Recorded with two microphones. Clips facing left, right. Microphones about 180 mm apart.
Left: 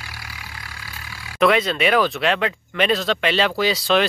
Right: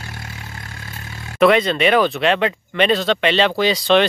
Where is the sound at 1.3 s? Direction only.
Centre (ahead or behind).